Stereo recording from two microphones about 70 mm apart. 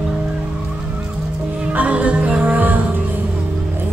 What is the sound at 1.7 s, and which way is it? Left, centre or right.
Music, centre.